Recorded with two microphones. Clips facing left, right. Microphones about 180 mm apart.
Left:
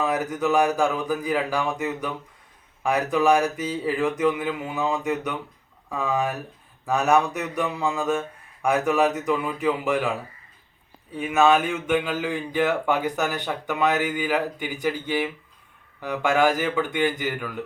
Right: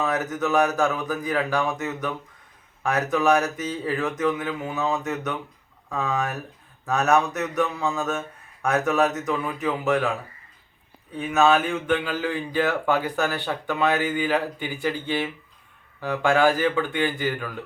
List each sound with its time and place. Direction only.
0.0 s speech: 10° left (ahead or behind)
11.2 s speech: 10° left (ahead or behind)